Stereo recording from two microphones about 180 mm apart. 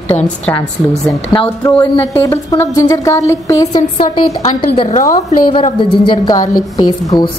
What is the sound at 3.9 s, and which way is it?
A woman's voice, 30° left (ahead or behind).